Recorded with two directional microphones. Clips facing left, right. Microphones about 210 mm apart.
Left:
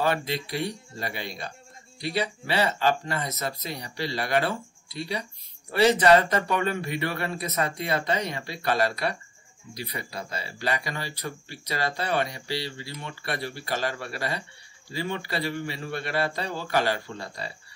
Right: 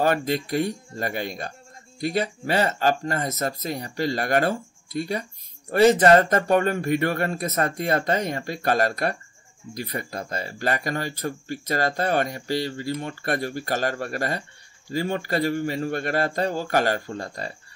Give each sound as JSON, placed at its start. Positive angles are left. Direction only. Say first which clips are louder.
{"t": 0.0, "sound": "speech", "louder": "right 4 dB", "side_deg": -45}